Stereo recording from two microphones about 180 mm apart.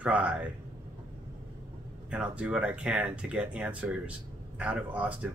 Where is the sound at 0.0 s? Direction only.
5° right (ahead or behind).